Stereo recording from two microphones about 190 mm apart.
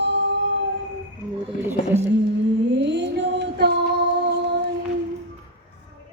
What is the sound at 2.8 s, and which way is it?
Mantra, 65° right (ahead or behind).